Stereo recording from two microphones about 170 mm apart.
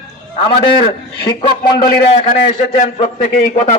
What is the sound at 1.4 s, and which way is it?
Speech, 25° left (ahead or behind).